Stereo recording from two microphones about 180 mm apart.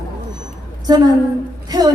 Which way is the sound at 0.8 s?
20° right (ahead or behind).